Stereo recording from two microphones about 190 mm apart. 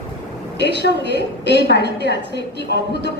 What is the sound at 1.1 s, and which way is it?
A woman's voice, 65° left (ahead or behind).